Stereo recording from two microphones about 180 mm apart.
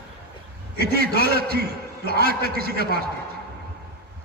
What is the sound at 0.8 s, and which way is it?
A man's voice, 60° right (ahead or behind).